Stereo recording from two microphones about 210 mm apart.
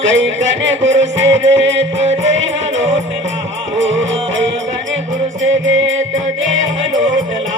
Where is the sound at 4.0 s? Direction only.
60° right (ahead or behind).